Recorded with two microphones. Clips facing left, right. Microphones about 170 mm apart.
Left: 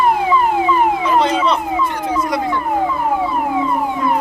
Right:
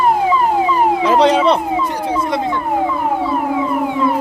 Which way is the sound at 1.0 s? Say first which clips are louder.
Right 4 dB; 85° right.